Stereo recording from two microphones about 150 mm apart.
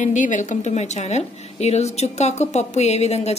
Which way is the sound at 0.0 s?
55° left (ahead or behind).